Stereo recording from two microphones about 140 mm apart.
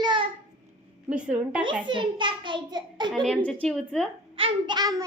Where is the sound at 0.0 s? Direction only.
35° right (ahead or behind).